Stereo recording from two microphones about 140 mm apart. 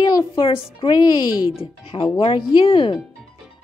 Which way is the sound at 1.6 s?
40° left (ahead or behind).